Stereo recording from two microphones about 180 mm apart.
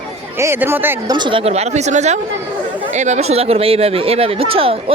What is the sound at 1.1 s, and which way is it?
Speech, 25° right (ahead or behind).